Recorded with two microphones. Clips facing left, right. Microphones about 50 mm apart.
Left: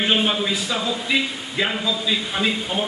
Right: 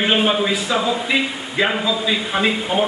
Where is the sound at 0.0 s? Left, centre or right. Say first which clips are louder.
Right 3 dB; centre.